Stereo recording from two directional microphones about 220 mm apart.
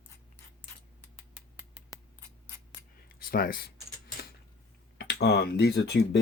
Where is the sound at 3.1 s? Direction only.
45° left (ahead or behind).